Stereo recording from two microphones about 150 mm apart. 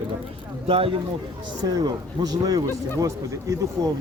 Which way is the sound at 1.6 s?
25° right (ahead or behind).